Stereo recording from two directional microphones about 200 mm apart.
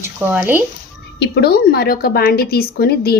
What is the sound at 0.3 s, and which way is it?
Speech, 10° right (ahead or behind).